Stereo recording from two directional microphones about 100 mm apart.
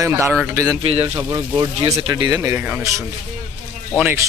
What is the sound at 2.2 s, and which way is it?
Speech, 40° right (ahead or behind).